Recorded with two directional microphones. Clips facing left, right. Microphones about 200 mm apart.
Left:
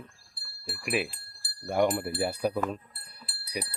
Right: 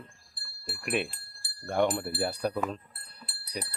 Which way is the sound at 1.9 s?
10° left (ahead or behind).